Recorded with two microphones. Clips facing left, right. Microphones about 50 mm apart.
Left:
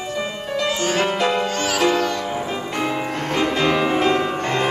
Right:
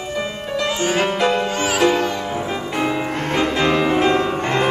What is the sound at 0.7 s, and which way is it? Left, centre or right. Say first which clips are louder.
Music: right 1 dB; right.